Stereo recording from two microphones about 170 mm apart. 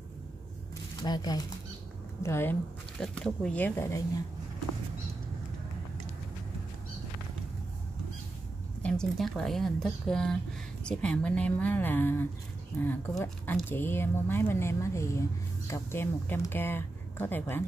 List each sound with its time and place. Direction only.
1.0 s speech: 25° left (ahead or behind)
3.0 s speech: 5° left (ahead or behind)
8.8 s speech: 5° left (ahead or behind)